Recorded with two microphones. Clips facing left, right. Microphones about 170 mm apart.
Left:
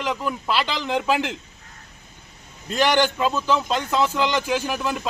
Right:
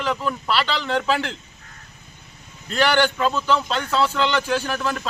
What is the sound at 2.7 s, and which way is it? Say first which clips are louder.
A man's voice: even; 15° left (ahead or behind).